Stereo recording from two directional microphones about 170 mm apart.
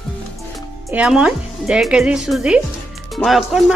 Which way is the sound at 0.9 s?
5° right (ahead or behind).